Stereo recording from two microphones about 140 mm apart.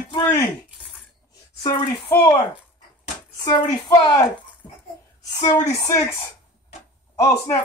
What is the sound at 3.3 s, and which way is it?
Speech, 30° left (ahead or behind).